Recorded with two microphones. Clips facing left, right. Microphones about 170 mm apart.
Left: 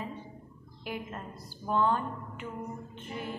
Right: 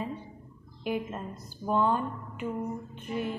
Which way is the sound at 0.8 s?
20° right (ahead or behind).